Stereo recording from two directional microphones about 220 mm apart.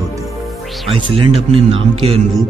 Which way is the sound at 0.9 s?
25° right (ahead or behind).